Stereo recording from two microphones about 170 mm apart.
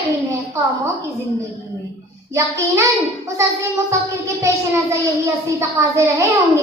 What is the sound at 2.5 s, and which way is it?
Music, 15° right (ahead or behind).